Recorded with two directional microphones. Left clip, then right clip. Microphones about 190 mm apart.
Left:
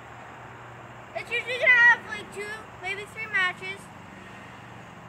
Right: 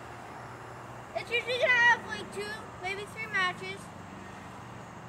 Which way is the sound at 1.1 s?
15° right (ahead or behind).